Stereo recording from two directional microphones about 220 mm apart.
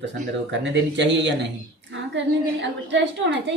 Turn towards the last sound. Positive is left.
turn(degrees=-55)  # may be behind; listen again after turning